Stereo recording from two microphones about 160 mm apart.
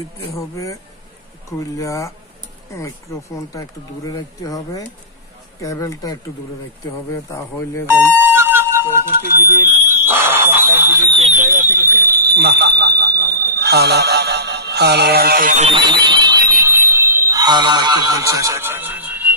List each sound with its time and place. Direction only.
0.4 s speech: 20° left (ahead or behind)
1.8 s speech: 20° left (ahead or behind)
7.8 s speech: 15° right (ahead or behind)
8.2 s a sound: 15° right (ahead or behind)
9.7 s fire alarm: 15° right (ahead or behind)
11.1 s speech: 45° right (ahead or behind); by 15.5 s 70° right (ahead or behind)
15.7 s alarm: 30° right (ahead or behind); by 19.3 s 10° right (ahead or behind)